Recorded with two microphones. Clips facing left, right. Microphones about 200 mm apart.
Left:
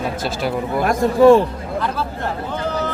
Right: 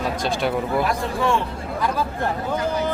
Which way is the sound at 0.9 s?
40° left (ahead or behind).